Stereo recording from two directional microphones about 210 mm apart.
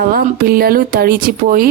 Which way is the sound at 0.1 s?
45° right (ahead or behind).